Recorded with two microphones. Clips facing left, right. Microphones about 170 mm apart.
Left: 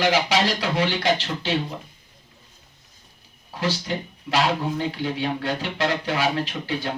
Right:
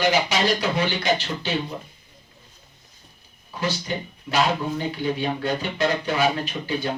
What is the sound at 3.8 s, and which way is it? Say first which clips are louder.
Speech: left 1 dB; 90° left.